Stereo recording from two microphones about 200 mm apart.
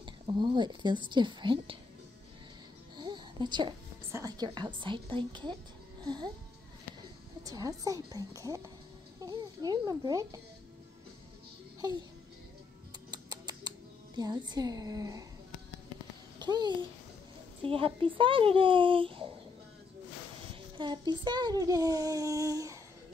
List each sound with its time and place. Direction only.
0.0 s a child's voice: 25° right (ahead or behind)
3.0 s a woman's voice: 20° right (ahead or behind)
7.4 s a woman's voice: 15° right (ahead or behind)
13.1 s music: 20° right (ahead or behind)
16.3 s a child's voice: 20° right (ahead or behind)
20.7 s a child's voice: 20° right (ahead or behind)